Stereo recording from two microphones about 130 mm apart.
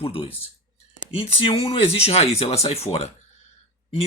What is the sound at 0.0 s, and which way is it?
Speech, 45° left (ahead or behind).